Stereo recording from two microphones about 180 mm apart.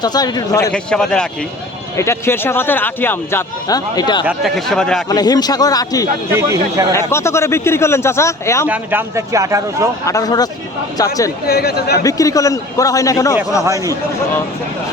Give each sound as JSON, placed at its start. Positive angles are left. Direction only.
{"t": 0.0, "sound": "a man's voice", "side_deg": 20}
{"t": 0.7, "sound": "speech", "side_deg": 5}
{"t": 2.0, "sound": "a man's voice", "side_deg": 15}
{"t": 4.3, "sound": "speech", "side_deg": 0}
{"t": 5.0, "sound": "a man's voice", "side_deg": 20}
{"t": 6.3, "sound": "speech", "side_deg": -15}
{"t": 6.9, "sound": "a man's voice", "side_deg": 15}
{"t": 8.6, "sound": "speech", "side_deg": -10}
{"t": 10.1, "sound": "a man's voice", "side_deg": 20}
{"t": 11.4, "sound": "speech", "side_deg": 60}
{"t": 12.0, "sound": "a man's voice", "side_deg": 20}
{"t": 13.7, "sound": "speech", "side_deg": -15}